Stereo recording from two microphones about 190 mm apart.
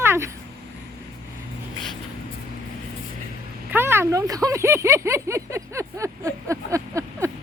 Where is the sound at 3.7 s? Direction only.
10° right (ahead or behind).